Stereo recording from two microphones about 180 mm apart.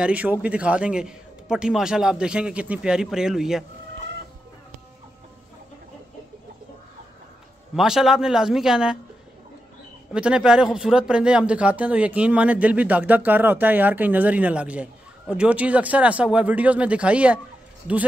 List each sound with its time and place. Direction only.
0.0 s a man's voice: 10° right (ahead or behind)
7.7 s a man's voice: centre (ahead or behind)
10.1 s speech: 5° right (ahead or behind)